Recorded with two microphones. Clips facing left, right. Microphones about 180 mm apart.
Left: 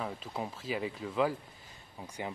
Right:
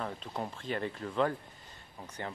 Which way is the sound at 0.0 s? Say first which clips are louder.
Even; 5° left (ahead or behind).